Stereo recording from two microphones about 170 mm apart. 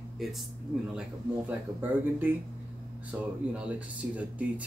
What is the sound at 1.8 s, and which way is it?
Speech, 10° right (ahead or behind).